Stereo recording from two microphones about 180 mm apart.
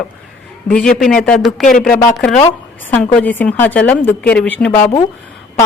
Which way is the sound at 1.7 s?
50° left (ahead or behind).